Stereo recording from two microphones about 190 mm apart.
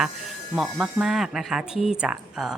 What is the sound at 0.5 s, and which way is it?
Speech, 5° right (ahead or behind).